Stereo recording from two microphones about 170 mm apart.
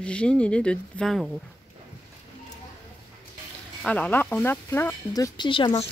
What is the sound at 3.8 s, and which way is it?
Speech, 10° left (ahead or behind).